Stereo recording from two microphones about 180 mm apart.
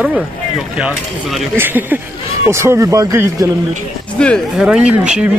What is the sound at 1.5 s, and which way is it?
Speech, 10° right (ahead or behind).